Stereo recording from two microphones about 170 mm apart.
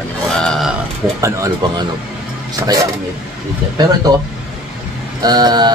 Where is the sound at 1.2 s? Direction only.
20° right (ahead or behind).